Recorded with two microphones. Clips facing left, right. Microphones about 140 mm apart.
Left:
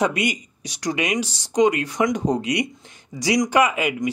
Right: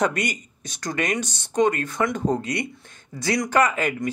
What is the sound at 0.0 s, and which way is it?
Speech, 10° left (ahead or behind).